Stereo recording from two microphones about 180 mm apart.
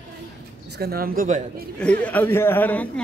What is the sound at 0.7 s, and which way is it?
Speech, 60° right (ahead or behind).